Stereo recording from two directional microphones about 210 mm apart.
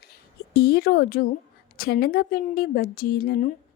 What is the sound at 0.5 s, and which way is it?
Speech, 45° left (ahead or behind).